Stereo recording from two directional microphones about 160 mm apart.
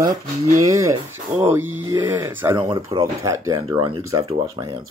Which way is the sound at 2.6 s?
30° right (ahead or behind).